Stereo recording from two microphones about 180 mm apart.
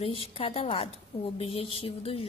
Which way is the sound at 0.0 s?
30° left (ahead or behind).